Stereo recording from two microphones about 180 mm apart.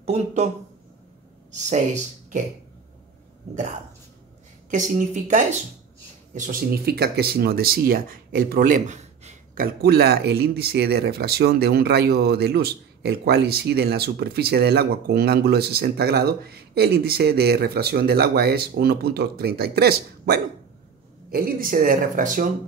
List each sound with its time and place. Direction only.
0.0 s speech: 40° right (ahead or behind)
1.5 s speech: 40° right (ahead or behind)
4.6 s speech: 45° right (ahead or behind)
9.8 s speech: 60° right (ahead or behind)